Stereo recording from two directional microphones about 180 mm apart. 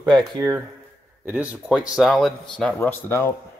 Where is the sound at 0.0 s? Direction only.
20° right (ahead or behind); by 3.3 s 15° left (ahead or behind).